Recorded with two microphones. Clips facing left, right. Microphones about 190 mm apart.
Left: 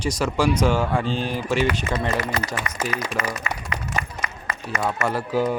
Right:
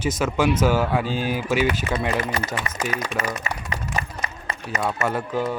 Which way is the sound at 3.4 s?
35° right (ahead or behind).